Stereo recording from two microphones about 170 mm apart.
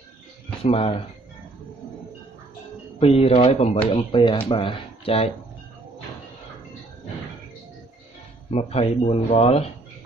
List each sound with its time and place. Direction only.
0.7 s speech: 35° left (ahead or behind)
3.0 s speech: 35° left (ahead or behind)
8.5 s speech: 40° left (ahead or behind)